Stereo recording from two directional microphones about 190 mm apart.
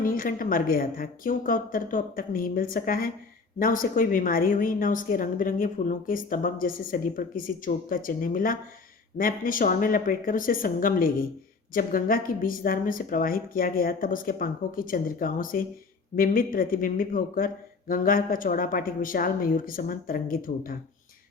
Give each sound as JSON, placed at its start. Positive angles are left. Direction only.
{"t": 0.0, "sound": "a woman's voice", "side_deg": 45}